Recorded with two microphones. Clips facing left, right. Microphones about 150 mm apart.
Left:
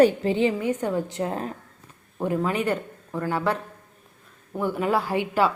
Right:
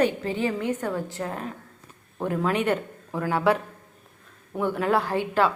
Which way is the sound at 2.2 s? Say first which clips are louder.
Even; 5° left (ahead or behind).